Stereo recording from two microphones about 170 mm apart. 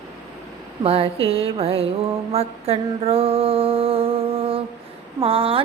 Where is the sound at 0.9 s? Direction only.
35° right (ahead or behind).